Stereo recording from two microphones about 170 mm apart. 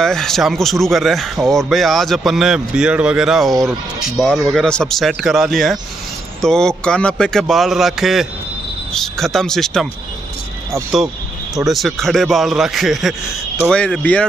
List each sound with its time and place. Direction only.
0.0 s a man's voice: 5° left (ahead or behind)
11.5 s a man's voice: centre (ahead or behind)